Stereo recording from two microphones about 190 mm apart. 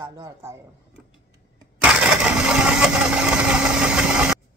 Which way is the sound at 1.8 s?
5° right (ahead or behind).